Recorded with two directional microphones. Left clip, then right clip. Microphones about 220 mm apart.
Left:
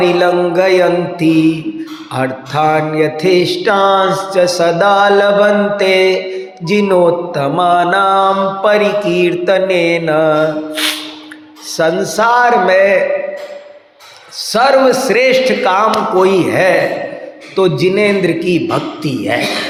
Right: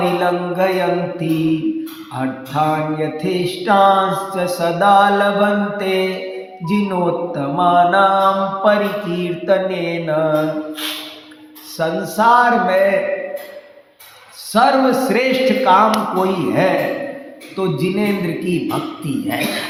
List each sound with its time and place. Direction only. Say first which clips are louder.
0.0 s mantra: left 6 dB; 40° left (ahead or behind)
11.8 s mantra: left 5 dB; 40° left (ahead or behind)
14.5 s mantra: left 4 dB; 40° left (ahead or behind)